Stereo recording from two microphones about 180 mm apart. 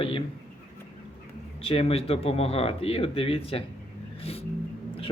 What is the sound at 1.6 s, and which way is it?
Speech, 35° left (ahead or behind).